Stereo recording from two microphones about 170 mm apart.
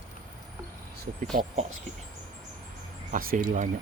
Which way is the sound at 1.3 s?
50° right (ahead or behind).